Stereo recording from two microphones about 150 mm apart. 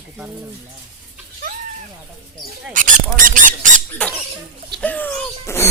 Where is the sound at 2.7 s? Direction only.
65° right (ahead or behind).